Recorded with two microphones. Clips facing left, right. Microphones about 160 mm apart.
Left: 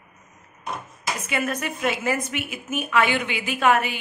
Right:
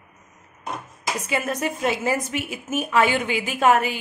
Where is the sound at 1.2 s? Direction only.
35° right (ahead or behind).